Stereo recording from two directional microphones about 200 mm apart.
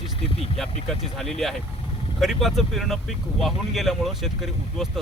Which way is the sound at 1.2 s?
Centre (ahead or behind).